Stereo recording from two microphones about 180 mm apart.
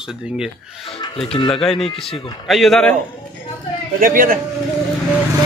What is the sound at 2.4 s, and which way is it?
Speech, centre (ahead or behind).